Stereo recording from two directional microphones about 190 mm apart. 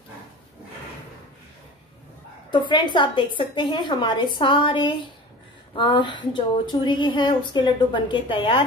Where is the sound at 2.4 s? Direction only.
25° left (ahead or behind).